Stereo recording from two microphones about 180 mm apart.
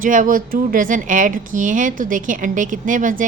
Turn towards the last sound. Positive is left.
turn(degrees=-45)  # may be behind; listen again after turning